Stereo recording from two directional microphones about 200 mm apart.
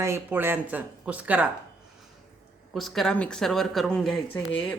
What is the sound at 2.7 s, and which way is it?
A woman's voice, centre (ahead or behind).